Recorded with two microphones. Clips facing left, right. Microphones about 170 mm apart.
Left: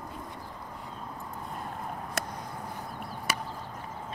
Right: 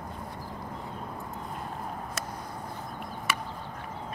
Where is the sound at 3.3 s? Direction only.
35° left (ahead or behind).